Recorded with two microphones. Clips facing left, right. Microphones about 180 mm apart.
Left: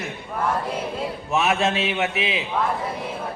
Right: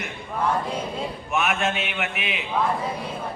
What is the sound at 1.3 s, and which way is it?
A man's voice, 35° left (ahead or behind).